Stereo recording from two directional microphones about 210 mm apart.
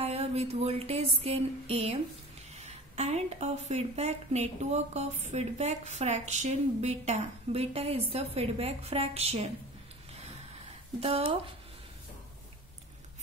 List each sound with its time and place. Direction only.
0.0 s a sound: 30° right (ahead or behind)
2.6 s a woman's voice: 30° right (ahead or behind)
11.0 s speech: 25° right (ahead or behind)